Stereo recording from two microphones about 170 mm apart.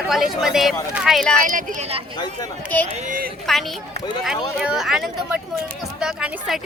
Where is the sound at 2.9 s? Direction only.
50° right (ahead or behind).